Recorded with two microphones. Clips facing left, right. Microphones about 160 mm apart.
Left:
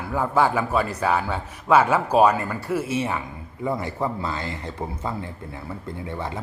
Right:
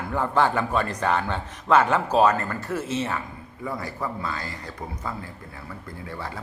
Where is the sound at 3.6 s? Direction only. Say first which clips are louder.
Left 5 dB; 25° left (ahead or behind).